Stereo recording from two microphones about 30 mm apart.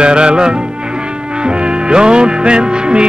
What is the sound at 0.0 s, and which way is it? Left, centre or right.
Music, right.